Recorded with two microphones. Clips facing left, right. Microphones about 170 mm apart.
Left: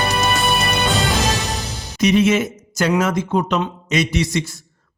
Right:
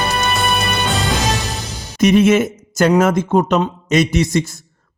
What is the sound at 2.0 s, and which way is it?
Speech, 50° right (ahead or behind).